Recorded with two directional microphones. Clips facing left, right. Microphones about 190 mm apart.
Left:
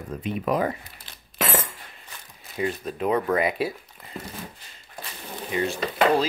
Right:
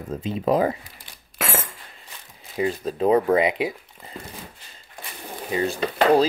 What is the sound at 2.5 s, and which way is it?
Speech, 25° right (ahead or behind).